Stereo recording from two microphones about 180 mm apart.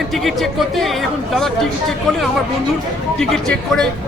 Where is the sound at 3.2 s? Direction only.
5° left (ahead or behind).